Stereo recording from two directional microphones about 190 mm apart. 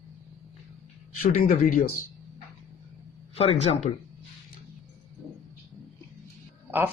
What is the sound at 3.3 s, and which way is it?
Speech, 30° left (ahead or behind).